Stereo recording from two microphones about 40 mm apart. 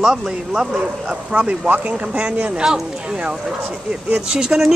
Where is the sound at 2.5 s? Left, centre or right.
Right.